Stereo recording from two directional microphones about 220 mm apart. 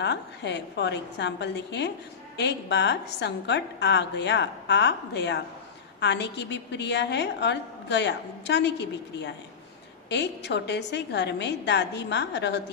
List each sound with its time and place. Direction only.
0.0 s a woman's voice: 50° left (ahead or behind)